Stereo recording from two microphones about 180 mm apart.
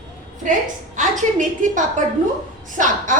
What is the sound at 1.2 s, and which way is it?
A woman's voice, 45° right (ahead or behind).